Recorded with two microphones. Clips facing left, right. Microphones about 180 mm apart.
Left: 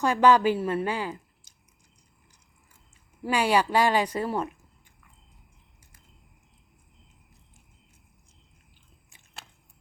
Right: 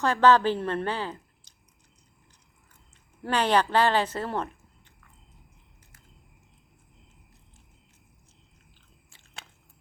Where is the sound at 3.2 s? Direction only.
10° left (ahead or behind).